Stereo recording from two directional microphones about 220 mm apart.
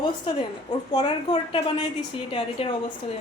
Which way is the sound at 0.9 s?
25° left (ahead or behind).